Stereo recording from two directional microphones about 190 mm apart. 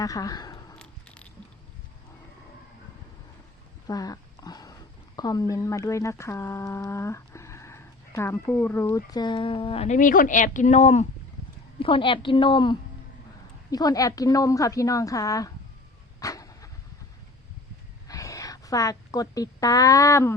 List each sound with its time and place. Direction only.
0.0 s a sound: 20° left (ahead or behind)
0.8 s keys jangling: 5° left (ahead or behind)
3.8 s a woman's voice: 20° left (ahead or behind)
16.2 s dog: 20° left (ahead or behind)
18.1 s a woman's voice: 15° left (ahead or behind)